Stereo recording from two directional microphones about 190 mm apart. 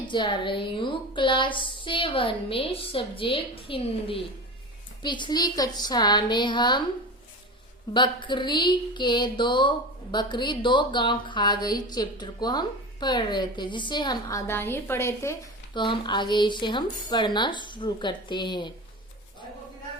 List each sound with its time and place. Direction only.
0.1 s speech: 25° left (ahead or behind)
7.9 s speech: 25° left (ahead or behind)